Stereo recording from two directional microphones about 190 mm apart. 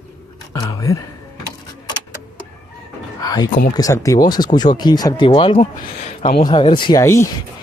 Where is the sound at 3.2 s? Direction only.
20° left (ahead or behind).